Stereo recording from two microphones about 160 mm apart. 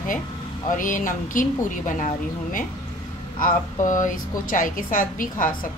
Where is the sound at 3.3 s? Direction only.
55° left (ahead or behind).